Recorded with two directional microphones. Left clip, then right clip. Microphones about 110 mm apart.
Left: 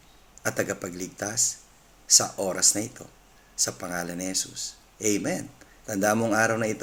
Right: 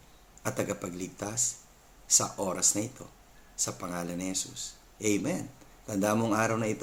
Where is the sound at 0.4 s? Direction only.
15° right (ahead or behind).